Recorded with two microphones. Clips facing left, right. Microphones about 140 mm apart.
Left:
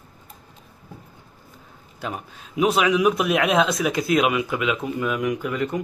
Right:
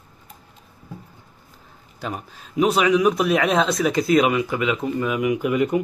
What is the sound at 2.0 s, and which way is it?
A man's voice, centre (ahead or behind).